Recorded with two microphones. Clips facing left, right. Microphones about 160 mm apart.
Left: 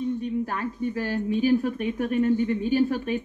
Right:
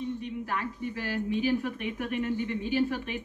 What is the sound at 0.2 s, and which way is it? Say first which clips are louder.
A woman's voice: left 6 dB; 40° left (ahead or behind).